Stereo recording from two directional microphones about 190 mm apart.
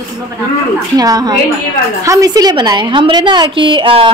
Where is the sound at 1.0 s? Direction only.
20° right (ahead or behind).